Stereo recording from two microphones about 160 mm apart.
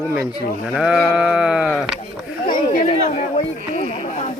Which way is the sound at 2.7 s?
50° left (ahead or behind).